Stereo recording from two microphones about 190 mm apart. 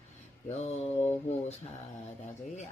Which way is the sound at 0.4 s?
35° left (ahead or behind).